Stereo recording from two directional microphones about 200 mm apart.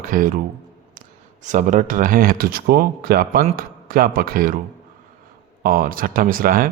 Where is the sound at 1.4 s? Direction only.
40° right (ahead or behind).